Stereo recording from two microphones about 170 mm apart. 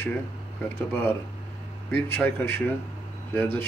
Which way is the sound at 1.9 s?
10° left (ahead or behind).